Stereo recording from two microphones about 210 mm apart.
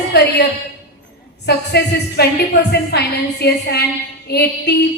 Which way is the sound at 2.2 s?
50° left (ahead or behind).